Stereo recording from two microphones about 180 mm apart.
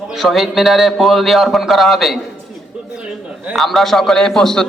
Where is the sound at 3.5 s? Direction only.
Centre (ahead or behind).